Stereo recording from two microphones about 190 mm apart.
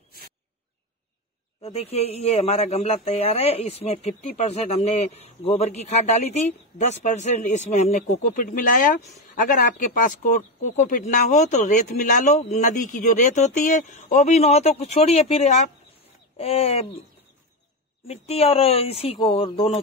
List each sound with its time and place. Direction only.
1.6 s speech: 35° left (ahead or behind)
18.0 s speech: 35° left (ahead or behind)